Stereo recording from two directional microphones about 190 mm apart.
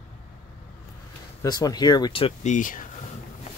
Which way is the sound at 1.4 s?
20° left (ahead or behind).